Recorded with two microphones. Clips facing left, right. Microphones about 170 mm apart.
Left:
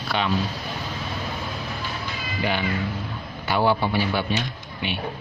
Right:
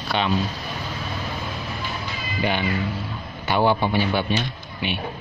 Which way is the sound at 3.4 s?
20° right (ahead or behind).